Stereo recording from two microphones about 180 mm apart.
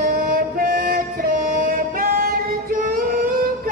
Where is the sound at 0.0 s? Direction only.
55° right (ahead or behind).